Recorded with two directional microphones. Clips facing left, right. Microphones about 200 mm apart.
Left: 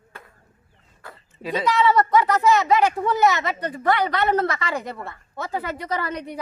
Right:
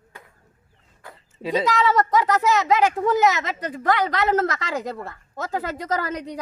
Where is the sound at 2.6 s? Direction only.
90° right.